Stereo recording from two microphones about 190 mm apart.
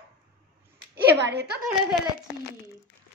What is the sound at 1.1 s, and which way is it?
Speech, 65° right (ahead or behind).